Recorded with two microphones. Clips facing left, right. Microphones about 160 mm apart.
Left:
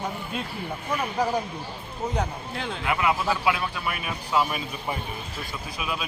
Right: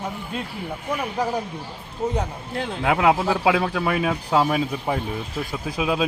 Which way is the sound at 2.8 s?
90° right.